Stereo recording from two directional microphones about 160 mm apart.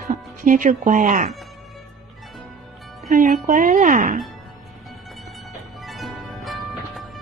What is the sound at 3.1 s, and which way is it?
Speech, 55° right (ahead or behind).